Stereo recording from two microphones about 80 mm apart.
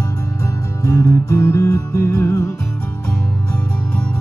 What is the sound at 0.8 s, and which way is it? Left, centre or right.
Music, left.